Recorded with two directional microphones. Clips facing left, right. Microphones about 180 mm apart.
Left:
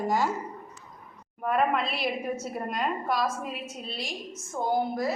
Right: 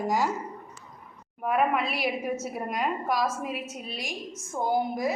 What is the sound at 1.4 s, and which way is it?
A woman's voice, 5° right (ahead or behind).